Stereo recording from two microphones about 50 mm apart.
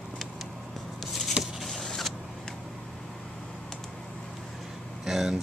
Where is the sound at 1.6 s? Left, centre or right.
Centre.